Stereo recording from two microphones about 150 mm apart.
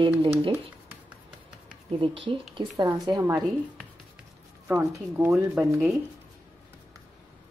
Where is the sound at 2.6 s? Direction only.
25° right (ahead or behind).